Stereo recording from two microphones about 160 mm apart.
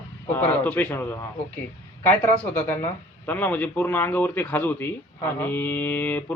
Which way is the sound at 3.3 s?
10° left (ahead or behind).